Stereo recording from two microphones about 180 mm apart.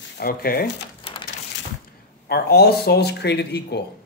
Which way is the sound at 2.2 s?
65° left (ahead or behind).